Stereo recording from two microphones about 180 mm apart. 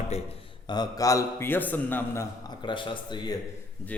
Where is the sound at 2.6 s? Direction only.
25° left (ahead or behind).